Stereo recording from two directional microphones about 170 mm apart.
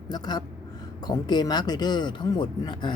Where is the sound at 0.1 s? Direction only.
25° left (ahead or behind).